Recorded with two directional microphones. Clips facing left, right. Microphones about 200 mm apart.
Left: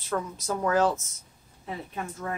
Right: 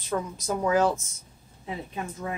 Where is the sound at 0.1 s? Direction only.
10° right (ahead or behind).